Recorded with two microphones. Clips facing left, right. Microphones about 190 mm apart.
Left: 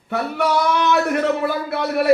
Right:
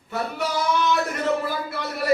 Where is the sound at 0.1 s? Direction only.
65° left (ahead or behind).